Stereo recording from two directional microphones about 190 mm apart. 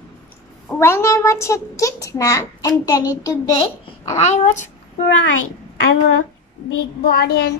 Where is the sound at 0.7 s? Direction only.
15° left (ahead or behind).